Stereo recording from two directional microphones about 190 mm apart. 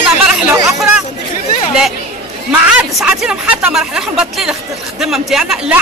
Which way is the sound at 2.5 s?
5° right (ahead or behind).